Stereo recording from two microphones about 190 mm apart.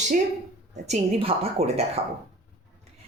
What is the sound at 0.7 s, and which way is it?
Speech, 35° right (ahead or behind).